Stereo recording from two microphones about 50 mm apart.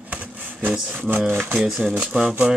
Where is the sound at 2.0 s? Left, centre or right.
Centre.